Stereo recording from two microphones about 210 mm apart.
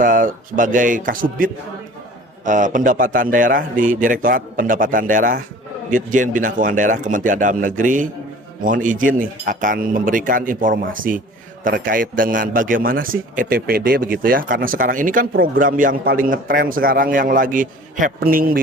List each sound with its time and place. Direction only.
0.0 s a man's voice: 40° right (ahead or behind)